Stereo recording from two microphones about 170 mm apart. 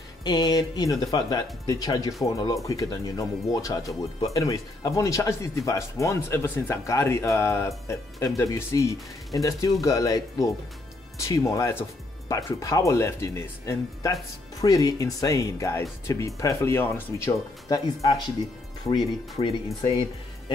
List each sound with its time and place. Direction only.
0.2 s speech: 25° left (ahead or behind)
19.4 s speech: 30° left (ahead or behind)